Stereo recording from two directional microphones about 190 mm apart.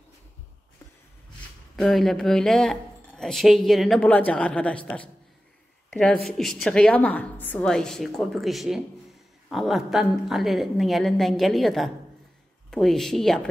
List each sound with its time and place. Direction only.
1.8 s speech: centre (ahead or behind)
5.9 s a sound: 5° left (ahead or behind)
6.2 s speech: centre (ahead or behind)